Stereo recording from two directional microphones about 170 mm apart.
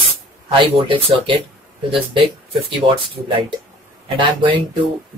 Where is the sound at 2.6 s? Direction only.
30° right (ahead or behind).